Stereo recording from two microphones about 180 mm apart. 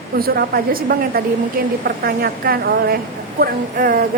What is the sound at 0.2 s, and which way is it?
A woman's voice, 55° right (ahead or behind).